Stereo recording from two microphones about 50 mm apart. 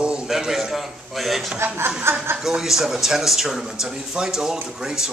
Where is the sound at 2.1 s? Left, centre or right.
Right.